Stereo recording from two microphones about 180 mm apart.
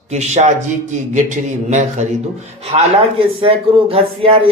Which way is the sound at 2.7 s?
30° right (ahead or behind).